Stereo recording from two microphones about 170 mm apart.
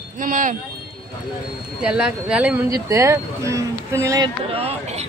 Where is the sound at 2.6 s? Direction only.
20° right (ahead or behind).